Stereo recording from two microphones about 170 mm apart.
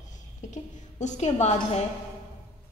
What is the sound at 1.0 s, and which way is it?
Speech, 45° left (ahead or behind).